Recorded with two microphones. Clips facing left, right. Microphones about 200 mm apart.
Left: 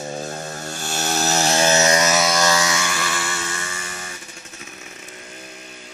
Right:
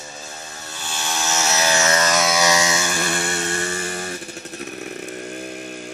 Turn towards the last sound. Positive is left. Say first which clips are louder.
# right 9 dB
turn(degrees=-50)  # may be behind; listen again after turning